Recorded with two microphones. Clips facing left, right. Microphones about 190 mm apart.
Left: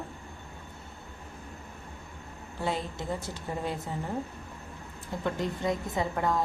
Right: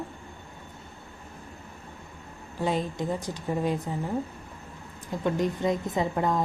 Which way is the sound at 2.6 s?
15° right (ahead or behind).